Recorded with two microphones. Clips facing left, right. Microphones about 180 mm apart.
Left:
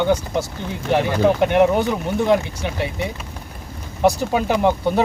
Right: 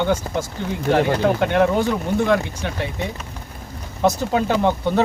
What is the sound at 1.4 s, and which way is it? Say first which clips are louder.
Speech: left 2 dB; 15° left (ahead or behind).